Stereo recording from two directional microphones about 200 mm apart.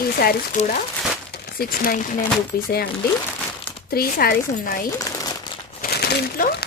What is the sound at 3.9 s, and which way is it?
Speech, 50° left (ahead or behind).